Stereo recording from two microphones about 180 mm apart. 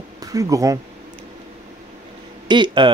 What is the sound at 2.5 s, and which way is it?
Speech, 25° right (ahead or behind).